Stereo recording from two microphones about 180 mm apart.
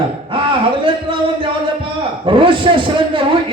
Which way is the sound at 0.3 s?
30° right (ahead or behind).